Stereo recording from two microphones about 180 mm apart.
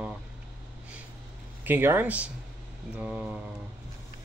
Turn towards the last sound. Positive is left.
turn(degrees=-5)  # may be behind; listen again after turning